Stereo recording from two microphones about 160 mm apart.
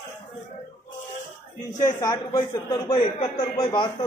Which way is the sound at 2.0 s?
25° left (ahead or behind).